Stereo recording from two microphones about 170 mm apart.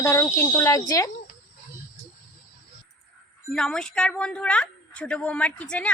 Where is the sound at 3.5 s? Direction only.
5° left (ahead or behind).